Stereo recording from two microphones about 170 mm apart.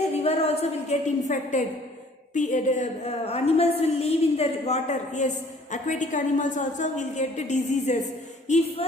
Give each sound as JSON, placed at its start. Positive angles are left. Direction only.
{"t": 0.1, "sound": "a woman's voice", "side_deg": 35}